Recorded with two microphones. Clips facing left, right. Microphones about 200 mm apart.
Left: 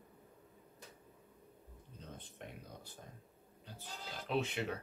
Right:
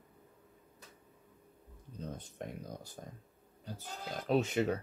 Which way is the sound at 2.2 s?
40° right (ahead or behind).